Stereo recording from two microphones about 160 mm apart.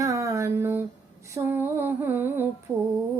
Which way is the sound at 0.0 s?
20° right (ahead or behind).